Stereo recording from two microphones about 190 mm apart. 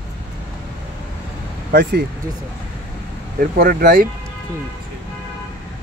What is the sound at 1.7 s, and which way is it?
Speech, 60° right (ahead or behind).